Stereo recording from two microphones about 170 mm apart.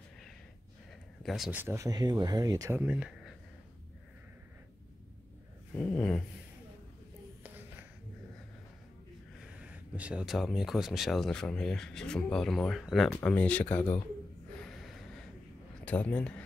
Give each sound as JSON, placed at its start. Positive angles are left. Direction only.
{"t": 1.2, "sound": "speech", "side_deg": 0}
{"t": 1.6, "sound": "speech", "side_deg": -15}
{"t": 2.8, "sound": "speech", "side_deg": -5}
{"t": 5.8, "sound": "a sound", "side_deg": 5}
{"t": 9.4, "sound": "speech", "side_deg": -10}
{"t": 14.6, "sound": "a sound", "side_deg": 0}
{"t": 15.8, "sound": "speech", "side_deg": 10}